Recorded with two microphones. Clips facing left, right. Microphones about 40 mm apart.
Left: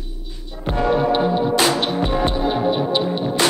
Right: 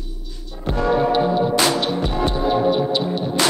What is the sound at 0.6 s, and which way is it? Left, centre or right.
Music, left.